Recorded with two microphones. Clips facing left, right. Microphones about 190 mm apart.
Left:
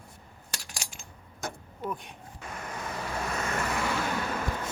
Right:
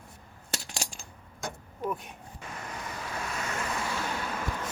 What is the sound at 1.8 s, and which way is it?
Speech, 5° right (ahead or behind).